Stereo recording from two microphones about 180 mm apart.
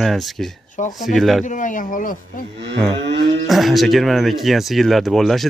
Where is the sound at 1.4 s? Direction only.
45° left (ahead or behind).